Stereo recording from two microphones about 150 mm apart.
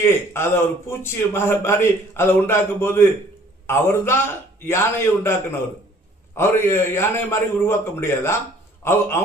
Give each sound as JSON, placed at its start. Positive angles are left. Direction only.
{"t": 0.0, "sound": "a man's voice", "side_deg": 15}